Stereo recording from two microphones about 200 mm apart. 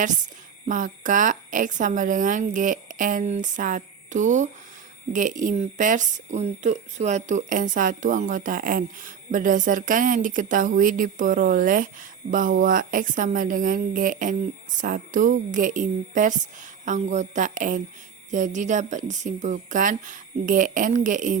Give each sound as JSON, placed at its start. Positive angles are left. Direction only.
{"t": 0.6, "sound": "speech", "side_deg": -40}